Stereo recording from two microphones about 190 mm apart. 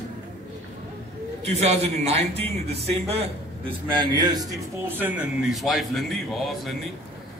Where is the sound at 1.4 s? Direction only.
35° right (ahead or behind).